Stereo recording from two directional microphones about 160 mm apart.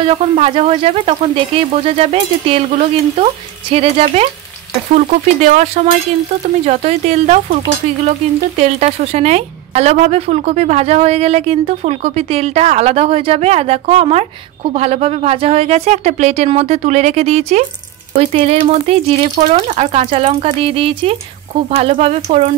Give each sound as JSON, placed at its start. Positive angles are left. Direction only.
{"t": 0.0, "sound": "a woman's voice", "side_deg": -35}
{"t": 8.5, "sound": "a woman's voice", "side_deg": -45}